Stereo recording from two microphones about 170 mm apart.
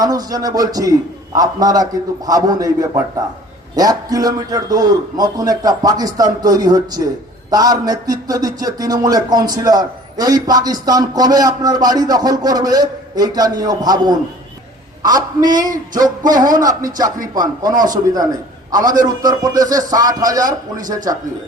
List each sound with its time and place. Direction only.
0.0 s a man's voice: 20° right (ahead or behind)
16.0 s a man's voice: 25° right (ahead or behind)